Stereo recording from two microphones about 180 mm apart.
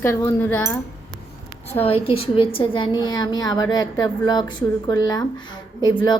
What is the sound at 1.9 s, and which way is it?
A woman's voice, 30° left (ahead or behind).